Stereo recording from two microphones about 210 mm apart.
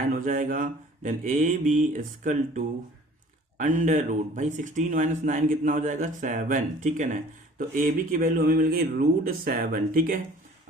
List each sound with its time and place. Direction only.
0.1 s speech: 40° right (ahead or behind)